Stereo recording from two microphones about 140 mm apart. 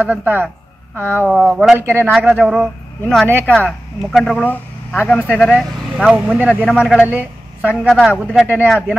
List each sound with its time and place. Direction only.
0.0 s speech: 10° right (ahead or behind)
1.8 s speech: 15° right (ahead or behind)
2.1 s a man's voice: centre (ahead or behind)